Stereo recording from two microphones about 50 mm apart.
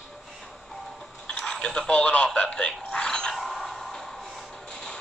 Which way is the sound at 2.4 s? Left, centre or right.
Left.